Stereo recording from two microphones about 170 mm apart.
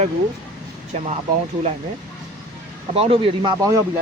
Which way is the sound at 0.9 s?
40° right (ahead or behind).